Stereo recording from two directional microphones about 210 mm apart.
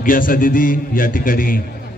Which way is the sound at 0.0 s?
40° left (ahead or behind).